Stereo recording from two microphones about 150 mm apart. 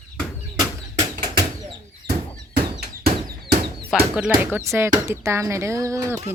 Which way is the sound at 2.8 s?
90° right.